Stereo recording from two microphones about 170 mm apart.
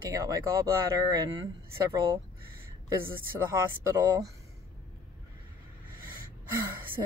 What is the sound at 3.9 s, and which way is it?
Speech, 20° right (ahead or behind).